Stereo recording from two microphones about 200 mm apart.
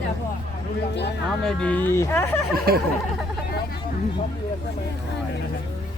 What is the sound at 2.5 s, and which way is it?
Speech, 50° right (ahead or behind).